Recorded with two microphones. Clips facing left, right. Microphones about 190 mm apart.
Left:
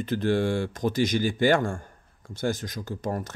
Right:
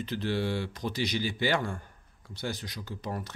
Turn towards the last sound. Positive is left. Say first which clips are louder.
# left 6 dB
turn(degrees=45)  # may be behind; listen again after turning